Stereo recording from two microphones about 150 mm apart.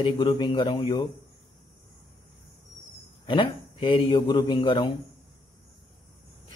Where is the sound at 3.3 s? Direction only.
35° left (ahead or behind).